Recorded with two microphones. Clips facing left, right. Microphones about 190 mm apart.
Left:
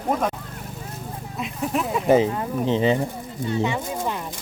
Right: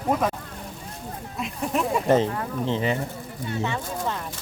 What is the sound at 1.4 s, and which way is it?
Duck, centre (ahead or behind).